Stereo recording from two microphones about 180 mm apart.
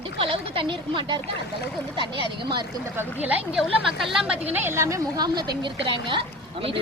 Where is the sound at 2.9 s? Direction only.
10° right (ahead or behind).